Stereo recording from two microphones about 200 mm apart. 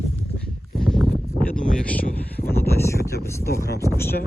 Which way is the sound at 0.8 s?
Centre (ahead or behind).